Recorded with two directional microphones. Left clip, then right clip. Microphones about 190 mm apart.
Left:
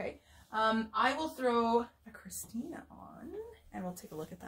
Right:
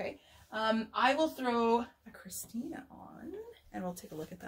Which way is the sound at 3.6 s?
20° right (ahead or behind).